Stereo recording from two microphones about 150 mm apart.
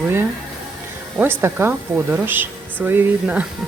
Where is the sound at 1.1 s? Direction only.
15° right (ahead or behind).